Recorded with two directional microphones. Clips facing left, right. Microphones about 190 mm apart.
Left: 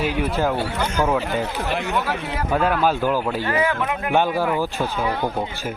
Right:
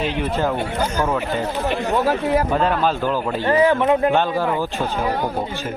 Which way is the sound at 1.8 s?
35° right (ahead or behind).